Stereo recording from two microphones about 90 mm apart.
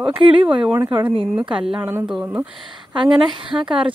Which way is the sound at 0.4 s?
70° right (ahead or behind).